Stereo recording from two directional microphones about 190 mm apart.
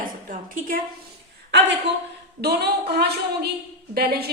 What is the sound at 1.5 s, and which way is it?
A woman's voice, 65° right (ahead or behind).